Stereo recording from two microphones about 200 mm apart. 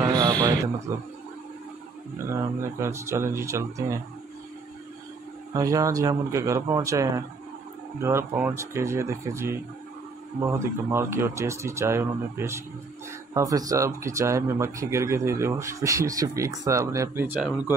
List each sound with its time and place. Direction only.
0.0 s a sound: 20° right (ahead or behind)
2.3 s speech: 15° right (ahead or behind)
5.5 s speech: 15° right (ahead or behind)